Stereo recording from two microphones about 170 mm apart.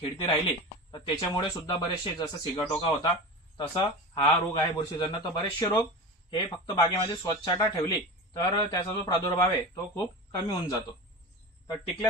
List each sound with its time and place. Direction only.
0.0 s a man's voice: 30° left (ahead or behind)